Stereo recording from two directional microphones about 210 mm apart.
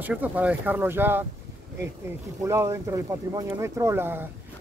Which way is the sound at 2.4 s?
15° right (ahead or behind).